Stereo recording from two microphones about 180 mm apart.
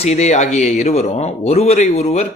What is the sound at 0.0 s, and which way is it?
Speech, 40° left (ahead or behind).